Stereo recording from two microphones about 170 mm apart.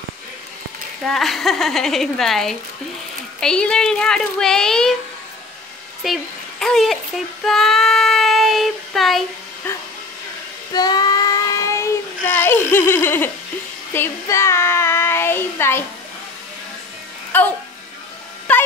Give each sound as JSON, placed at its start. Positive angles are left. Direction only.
{"t": 1.0, "sound": "speech", "side_deg": 0}
{"t": 6.0, "sound": "speech", "side_deg": 0}
{"t": 7.4, "sound": "child singing", "side_deg": 0}
{"t": 9.6, "sound": "speech", "side_deg": 10}
{"t": 10.7, "sound": "child singing", "side_deg": 25}
{"t": 17.3, "sound": "music", "side_deg": 10}
{"t": 18.5, "sound": "a sound", "side_deg": 10}